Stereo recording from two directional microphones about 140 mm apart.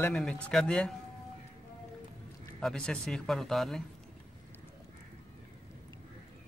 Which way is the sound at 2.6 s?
5° left (ahead or behind).